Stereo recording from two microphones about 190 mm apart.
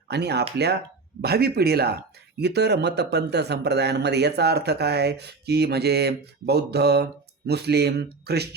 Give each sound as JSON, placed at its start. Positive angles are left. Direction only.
{"t": 0.1, "sound": "speech", "side_deg": -60}